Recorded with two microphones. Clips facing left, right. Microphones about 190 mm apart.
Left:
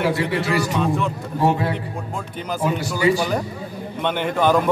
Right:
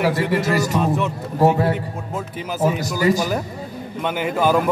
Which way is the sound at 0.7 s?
5° right (ahead or behind).